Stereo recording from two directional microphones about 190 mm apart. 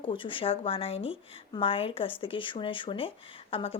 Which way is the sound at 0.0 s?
25° left (ahead or behind).